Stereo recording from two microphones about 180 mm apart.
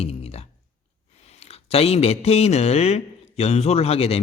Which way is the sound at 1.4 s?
35° left (ahead or behind).